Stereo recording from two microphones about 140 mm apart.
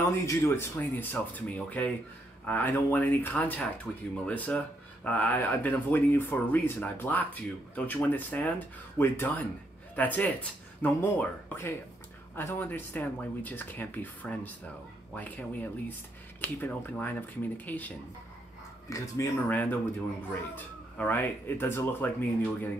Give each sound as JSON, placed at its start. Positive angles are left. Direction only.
{"t": 0.3, "sound": "speech", "side_deg": 20}
{"t": 18.9, "sound": "speech", "side_deg": 20}
{"t": 19.5, "sound": "speech", "side_deg": 10}